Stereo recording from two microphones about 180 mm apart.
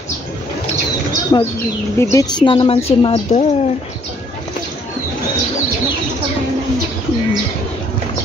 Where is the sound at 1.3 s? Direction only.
25° left (ahead or behind).